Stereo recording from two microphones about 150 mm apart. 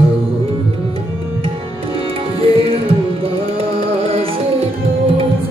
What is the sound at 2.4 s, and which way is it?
Music, 40° right (ahead or behind).